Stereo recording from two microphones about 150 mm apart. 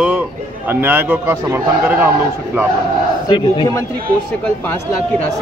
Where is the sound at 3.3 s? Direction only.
30° left (ahead or behind).